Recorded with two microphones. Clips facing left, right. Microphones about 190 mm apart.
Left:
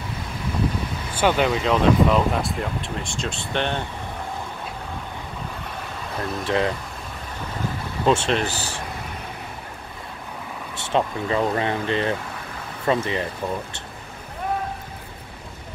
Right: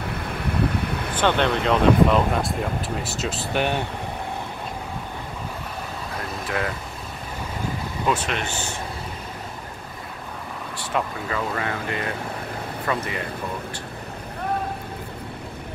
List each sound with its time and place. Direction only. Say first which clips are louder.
0.1 s vehicle: even; 60° right (ahead or behind)
1.1 s speech: left 1 dB; 5° left (ahead or behind); by 3.8 s 10° right (ahead or behind)
6.4 s speech: left 5 dB; 25° left (ahead or behind)
8.0 s speech: left 5 dB; 25° left (ahead or behind)
10.8 s speech: left 4 dB; 25° left (ahead or behind)